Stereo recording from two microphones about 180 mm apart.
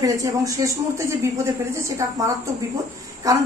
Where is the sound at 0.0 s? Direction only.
20° right (ahead or behind).